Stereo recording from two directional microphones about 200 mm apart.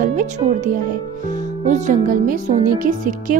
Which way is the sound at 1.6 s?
40° right (ahead or behind).